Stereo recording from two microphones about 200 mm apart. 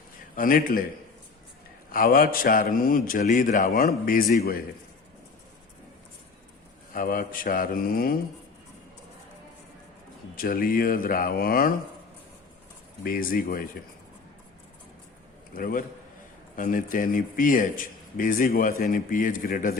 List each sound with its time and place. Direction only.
0.3 s a man's voice: 45° left (ahead or behind)
1.9 s a man's voice: 45° left (ahead or behind)
6.9 s a man's voice: 45° left (ahead or behind)
10.3 s a man's voice: 45° left (ahead or behind)
13.0 s a man's voice: 45° left (ahead or behind)
15.5 s a man's voice: 45° left (ahead or behind)